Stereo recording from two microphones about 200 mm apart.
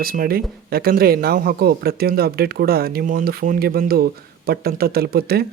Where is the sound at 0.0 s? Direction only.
45° right (ahead or behind).